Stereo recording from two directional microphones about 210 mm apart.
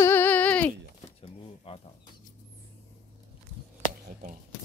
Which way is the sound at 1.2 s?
25° left (ahead or behind).